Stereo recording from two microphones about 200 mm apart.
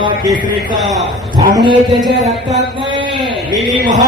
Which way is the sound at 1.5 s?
25° right (ahead or behind).